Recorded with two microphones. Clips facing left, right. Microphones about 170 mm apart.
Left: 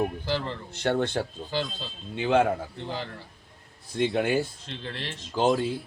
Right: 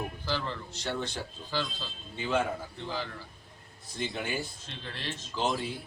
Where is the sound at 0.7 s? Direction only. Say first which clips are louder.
Left 13 dB; 60° left (ahead or behind).